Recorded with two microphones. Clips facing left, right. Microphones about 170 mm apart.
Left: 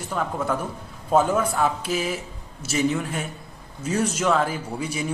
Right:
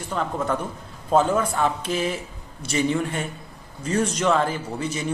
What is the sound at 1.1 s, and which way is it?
Speech, 10° left (ahead or behind).